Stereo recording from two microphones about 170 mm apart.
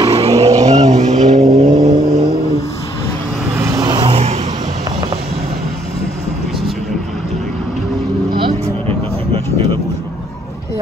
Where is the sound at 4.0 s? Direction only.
35° right (ahead or behind).